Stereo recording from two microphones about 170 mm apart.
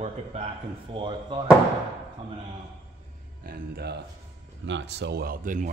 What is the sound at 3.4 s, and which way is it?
Speech, 65° right (ahead or behind).